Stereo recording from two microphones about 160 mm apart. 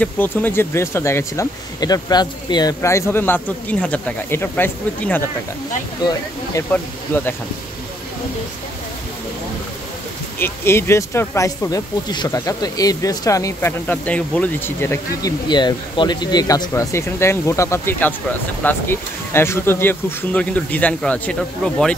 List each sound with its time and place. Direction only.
0.0 s speech: 10° left (ahead or behind)
6.0 s speech: 25° left (ahead or behind)
6.7 s speech: 10° left (ahead or behind)
10.4 s speech: 15° left (ahead or behind)
15.4 s speech: 30° left (ahead or behind); by 21.9 s 5° left (ahead or behind)